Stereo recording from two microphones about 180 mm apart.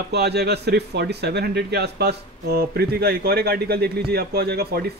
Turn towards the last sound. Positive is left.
turn(degrees=-60)  # may be behind; listen again after turning